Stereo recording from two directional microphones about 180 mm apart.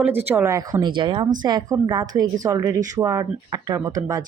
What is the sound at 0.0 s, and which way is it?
Speech, 10° right (ahead or behind).